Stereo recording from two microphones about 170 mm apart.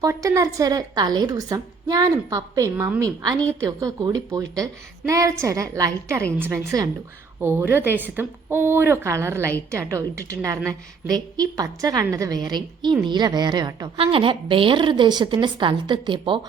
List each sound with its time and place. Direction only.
0.0 s a woman's voice: 20° right (ahead or behind)